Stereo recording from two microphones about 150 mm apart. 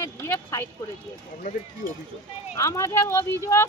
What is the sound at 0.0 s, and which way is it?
Speech, 15° left (ahead or behind).